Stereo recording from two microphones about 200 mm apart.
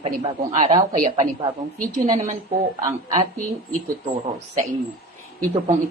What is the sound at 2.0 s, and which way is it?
Speech, 20° right (ahead or behind).